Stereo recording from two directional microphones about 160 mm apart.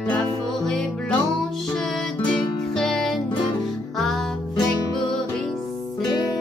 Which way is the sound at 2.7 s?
Centre (ahead or behind).